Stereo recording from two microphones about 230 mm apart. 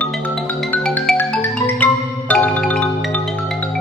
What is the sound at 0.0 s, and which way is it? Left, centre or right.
Music, centre.